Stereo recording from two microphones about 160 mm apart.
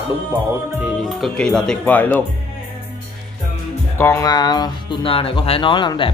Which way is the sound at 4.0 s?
15° left (ahead or behind).